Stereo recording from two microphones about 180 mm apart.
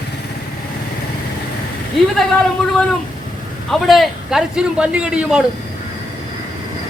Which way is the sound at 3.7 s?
Centre (ahead or behind).